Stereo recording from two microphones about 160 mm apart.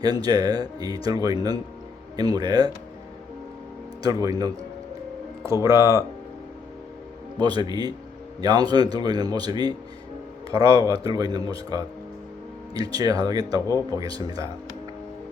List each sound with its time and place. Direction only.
0.0 s speech: 25° right (ahead or behind)
4.0 s speech: 25° right (ahead or behind)
5.6 s speech: 15° right (ahead or behind)
7.3 s speech: 25° right (ahead or behind)
10.8 s speech: 25° right (ahead or behind)
13.7 s a man's voice: 20° left (ahead or behind)
14.0 s speech: 25° right (ahead or behind)